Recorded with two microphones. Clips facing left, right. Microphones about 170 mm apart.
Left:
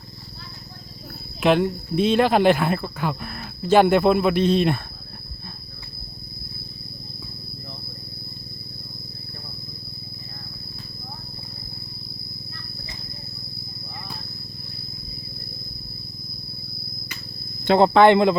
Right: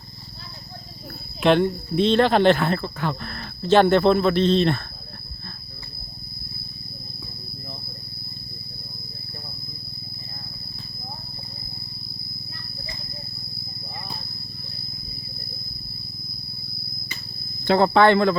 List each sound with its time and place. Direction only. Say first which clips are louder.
1.4 s speech: right 1 dB; 5° left (ahead or behind)
17.7 s speech: left 2 dB; 20° left (ahead or behind)